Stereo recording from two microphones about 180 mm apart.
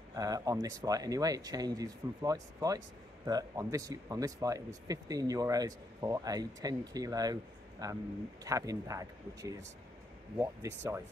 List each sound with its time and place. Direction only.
0.1 s speech: 20° right (ahead or behind)